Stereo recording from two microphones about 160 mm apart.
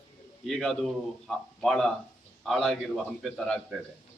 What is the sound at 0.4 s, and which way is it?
A man's voice, centre (ahead or behind).